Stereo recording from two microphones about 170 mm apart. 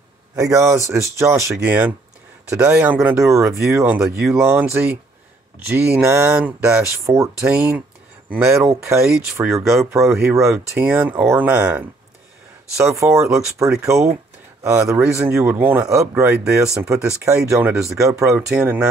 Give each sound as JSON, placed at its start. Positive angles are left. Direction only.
{"t": 0.4, "sound": "speech", "side_deg": -20}
{"t": 10.3, "sound": "speech", "side_deg": -15}
{"t": 18.5, "sound": "speech", "side_deg": -5}